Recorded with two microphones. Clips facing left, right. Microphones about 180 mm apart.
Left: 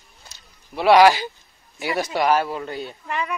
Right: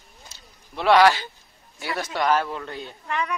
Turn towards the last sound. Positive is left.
turn(degrees=5)  # may be behind; listen again after turning